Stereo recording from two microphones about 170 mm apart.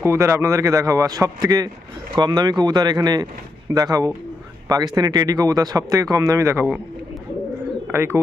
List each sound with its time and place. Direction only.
0.0 s speech: 15° right (ahead or behind)
7.9 s speech: 15° right (ahead or behind)